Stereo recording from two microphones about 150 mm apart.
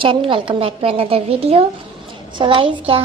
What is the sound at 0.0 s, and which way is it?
A woman's voice, 35° right (ahead or behind).